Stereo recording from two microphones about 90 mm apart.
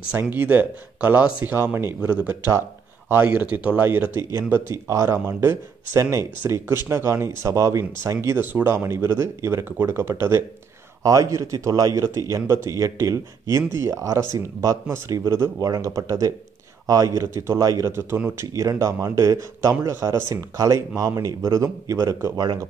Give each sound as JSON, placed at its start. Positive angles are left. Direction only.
{"t": 0.3, "sound": "speech", "side_deg": -20}